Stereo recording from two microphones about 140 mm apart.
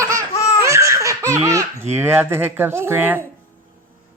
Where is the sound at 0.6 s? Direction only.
20° right (ahead or behind).